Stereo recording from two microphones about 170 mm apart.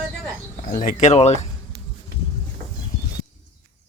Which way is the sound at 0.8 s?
40° left (ahead or behind).